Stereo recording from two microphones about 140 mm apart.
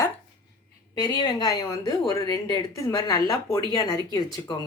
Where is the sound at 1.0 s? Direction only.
30° left (ahead or behind).